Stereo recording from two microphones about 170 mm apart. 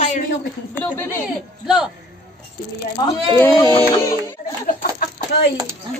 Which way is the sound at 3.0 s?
25° left (ahead or behind).